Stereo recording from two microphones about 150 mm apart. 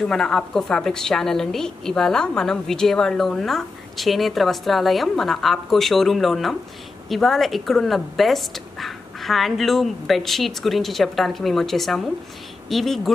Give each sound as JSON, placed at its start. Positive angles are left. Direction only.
{"t": 0.1, "sound": "a woman's voice", "side_deg": 5}